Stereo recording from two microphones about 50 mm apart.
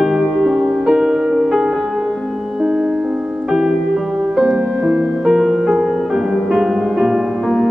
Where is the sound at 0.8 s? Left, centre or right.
Centre.